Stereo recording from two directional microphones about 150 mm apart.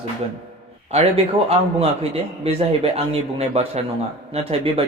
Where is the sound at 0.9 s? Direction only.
40° right (ahead or behind).